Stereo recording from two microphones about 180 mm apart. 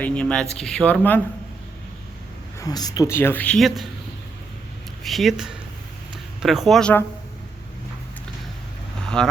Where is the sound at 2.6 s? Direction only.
20° left (ahead or behind); by 3.8 s centre (ahead or behind).